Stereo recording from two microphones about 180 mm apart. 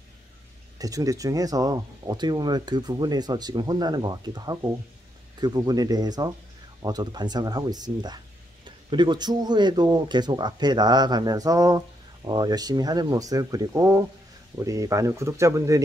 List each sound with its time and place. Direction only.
0.7 s speech: 20° right (ahead or behind)